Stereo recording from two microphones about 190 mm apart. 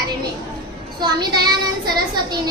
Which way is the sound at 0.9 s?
20° right (ahead or behind).